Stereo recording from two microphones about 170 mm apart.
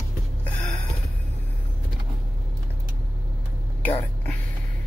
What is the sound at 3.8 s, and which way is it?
Whispering, 10° left (ahead or behind).